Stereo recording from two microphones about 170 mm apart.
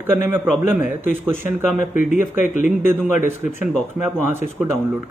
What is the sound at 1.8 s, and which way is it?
Speech, 50° left (ahead or behind).